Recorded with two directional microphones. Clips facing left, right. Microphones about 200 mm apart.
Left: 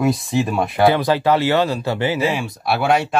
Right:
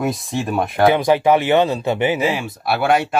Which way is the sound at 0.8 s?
15° right (ahead or behind).